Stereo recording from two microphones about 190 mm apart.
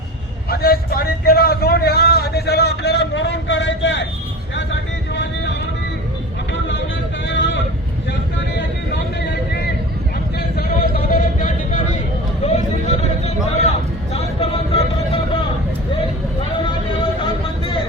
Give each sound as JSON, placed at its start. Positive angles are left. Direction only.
{"t": 0.5, "sound": "a man's voice", "side_deg": 55}
{"t": 4.5, "sound": "vehicle", "side_deg": 70}
{"t": 12.4, "sound": "a sound", "side_deg": 35}
{"t": 16.6, "sound": "vehicle", "side_deg": 25}